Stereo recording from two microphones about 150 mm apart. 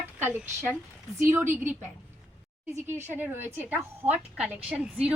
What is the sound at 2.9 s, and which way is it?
A woman's voice, 15° right (ahead or behind).